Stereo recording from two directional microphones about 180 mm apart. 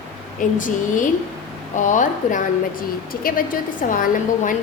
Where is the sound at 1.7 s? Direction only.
45° left (ahead or behind).